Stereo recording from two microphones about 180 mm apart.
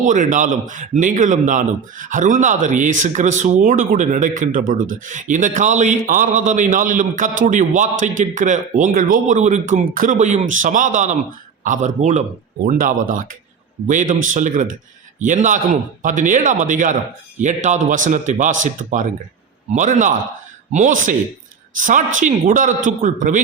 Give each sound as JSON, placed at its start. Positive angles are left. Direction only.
{"t": 0.0, "sound": "a man's voice", "side_deg": -45}